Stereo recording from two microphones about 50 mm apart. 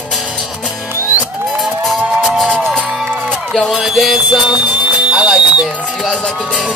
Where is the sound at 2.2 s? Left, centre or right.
Centre.